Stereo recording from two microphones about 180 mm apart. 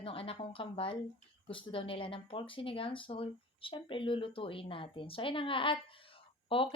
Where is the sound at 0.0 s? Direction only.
30° left (ahead or behind).